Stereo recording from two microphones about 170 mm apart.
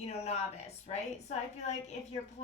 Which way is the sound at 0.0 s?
40° left (ahead or behind).